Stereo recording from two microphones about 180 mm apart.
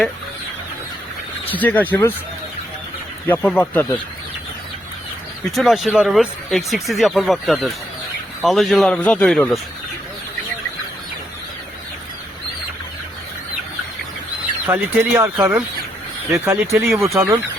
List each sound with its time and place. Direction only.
1.6 s speech: 10° left (ahead or behind)
3.2 s speech: 10° left (ahead or behind)
5.5 s speech: centre (ahead or behind)
14.7 s speech: 15° right (ahead or behind)
16.9 s speech: centre (ahead or behind)
17.2 s speech: 15° right (ahead or behind)